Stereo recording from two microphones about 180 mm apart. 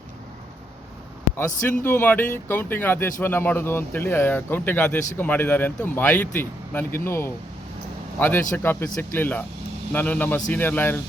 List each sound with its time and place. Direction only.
1.5 s speech: 45° left (ahead or behind)
1.8 s speech: 10° left (ahead or behind)